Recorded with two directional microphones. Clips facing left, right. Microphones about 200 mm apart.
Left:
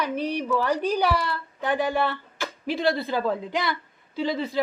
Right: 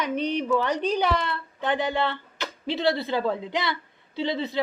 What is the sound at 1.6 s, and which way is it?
Speech, 20° right (ahead or behind).